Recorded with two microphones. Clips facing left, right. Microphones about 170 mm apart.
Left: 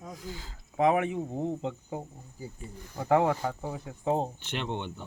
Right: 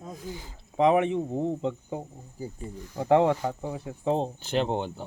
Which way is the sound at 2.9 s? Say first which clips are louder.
Right 3 dB; 25° right (ahead or behind).